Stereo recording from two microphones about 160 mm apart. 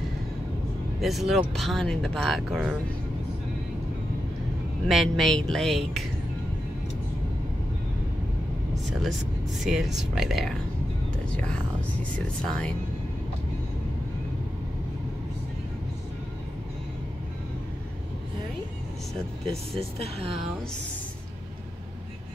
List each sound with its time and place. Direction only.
1.0 s speech: centre (ahead or behind)
4.8 s speech: centre (ahead or behind)
9.6 s speech: centre (ahead or behind)
19.5 s speech: 40° right (ahead or behind)